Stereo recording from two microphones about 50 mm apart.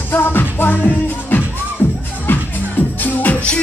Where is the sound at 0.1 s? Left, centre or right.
Left.